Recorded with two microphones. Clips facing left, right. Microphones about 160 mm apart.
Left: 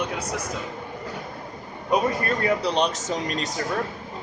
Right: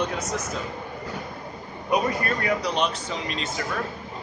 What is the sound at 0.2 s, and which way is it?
Speech, 10° left (ahead or behind).